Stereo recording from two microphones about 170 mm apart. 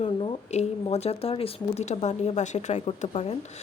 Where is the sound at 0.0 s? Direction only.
30° left (ahead or behind).